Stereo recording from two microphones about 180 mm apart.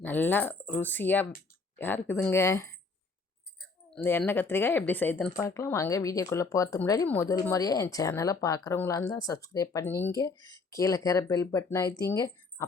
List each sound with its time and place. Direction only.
0.0 s speech: 10° left (ahead or behind)
3.9 s speech: 10° left (ahead or behind)